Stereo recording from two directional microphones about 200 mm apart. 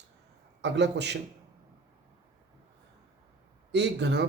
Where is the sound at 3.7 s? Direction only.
60° right (ahead or behind).